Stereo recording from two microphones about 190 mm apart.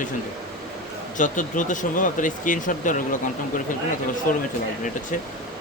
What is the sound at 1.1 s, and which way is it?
Speech, 40° left (ahead or behind).